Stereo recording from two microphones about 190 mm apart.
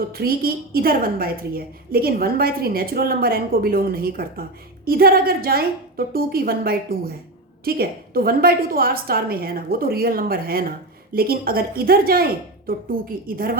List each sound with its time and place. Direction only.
0.1 s a woman's voice: 50° right (ahead or behind)